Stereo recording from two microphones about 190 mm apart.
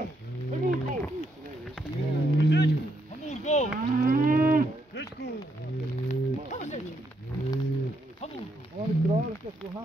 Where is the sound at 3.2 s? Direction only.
40° left (ahead or behind).